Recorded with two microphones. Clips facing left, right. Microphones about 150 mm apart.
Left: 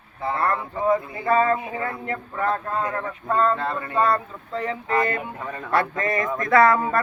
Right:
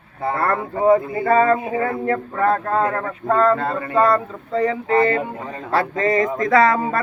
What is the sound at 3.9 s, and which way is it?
Speech, 35° right (ahead or behind).